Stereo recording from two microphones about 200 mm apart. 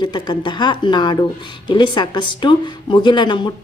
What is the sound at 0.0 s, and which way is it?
A woman's voice, 20° left (ahead or behind).